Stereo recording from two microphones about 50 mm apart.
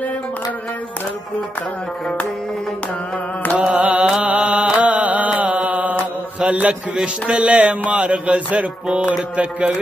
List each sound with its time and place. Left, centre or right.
3.5 s music: right
4.2 s mantra: right
6.4 s a man's voice: right
7.2 s mantra: right